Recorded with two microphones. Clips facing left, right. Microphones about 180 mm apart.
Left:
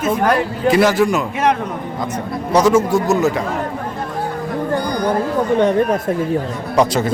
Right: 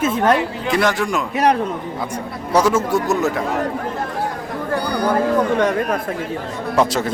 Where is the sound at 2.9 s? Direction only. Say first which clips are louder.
Left 3 dB; centre (ahead or behind).